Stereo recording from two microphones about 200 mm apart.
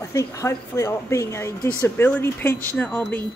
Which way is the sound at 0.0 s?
15° left (ahead or behind).